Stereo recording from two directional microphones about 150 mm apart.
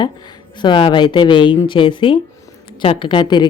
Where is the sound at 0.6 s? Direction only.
30° left (ahead or behind).